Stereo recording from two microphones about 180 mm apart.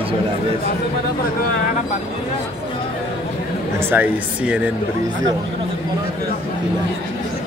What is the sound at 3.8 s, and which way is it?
Speech, 10° right (ahead or behind).